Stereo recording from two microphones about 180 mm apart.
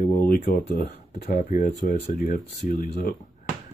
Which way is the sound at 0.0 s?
55° left (ahead or behind).